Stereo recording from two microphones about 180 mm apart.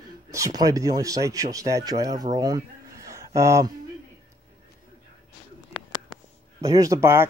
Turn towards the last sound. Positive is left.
turn(degrees=-15)  # may be behind; listen again after turning